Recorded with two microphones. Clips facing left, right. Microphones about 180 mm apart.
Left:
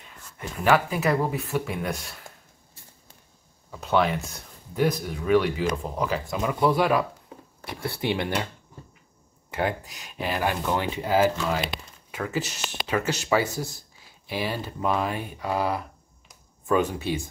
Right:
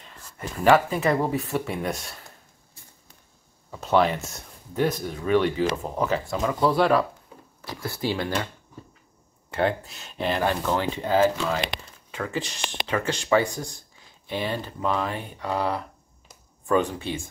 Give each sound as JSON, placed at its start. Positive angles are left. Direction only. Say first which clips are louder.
{"t": 0.9, "sound": "speech", "louder": "right 1 dB", "side_deg": 5}
{"t": 3.8, "sound": "speech", "louder": "right 2 dB", "side_deg": 0}
{"t": 6.2, "sound": "speech", "louder": "even", "side_deg": 20}
{"t": 9.5, "sound": "speech", "louder": "right 3 dB", "side_deg": 15}